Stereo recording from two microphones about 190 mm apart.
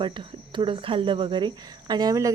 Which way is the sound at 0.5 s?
25° right (ahead or behind).